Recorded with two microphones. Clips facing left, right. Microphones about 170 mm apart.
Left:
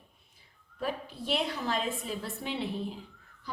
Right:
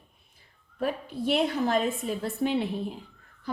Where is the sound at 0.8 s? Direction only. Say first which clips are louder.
Right 6 dB; 50° right (ahead or behind).